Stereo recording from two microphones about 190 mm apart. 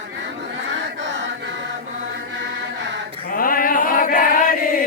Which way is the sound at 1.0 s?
70° right (ahead or behind).